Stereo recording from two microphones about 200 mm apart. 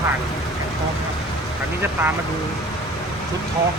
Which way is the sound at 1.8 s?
10° right (ahead or behind).